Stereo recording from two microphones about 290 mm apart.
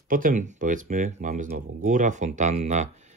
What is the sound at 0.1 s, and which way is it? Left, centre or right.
Speech, right.